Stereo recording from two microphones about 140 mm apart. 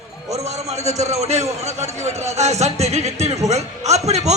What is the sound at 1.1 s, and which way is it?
Speech, 50° right (ahead or behind).